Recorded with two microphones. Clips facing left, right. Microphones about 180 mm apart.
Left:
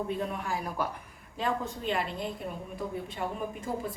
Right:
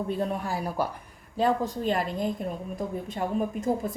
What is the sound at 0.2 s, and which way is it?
A woman's voice, 35° right (ahead or behind).